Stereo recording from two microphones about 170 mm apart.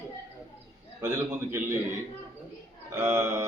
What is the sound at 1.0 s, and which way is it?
Speech, 15° right (ahead or behind).